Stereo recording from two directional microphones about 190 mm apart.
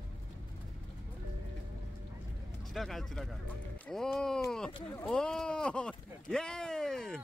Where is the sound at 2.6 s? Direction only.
Centre (ahead or behind).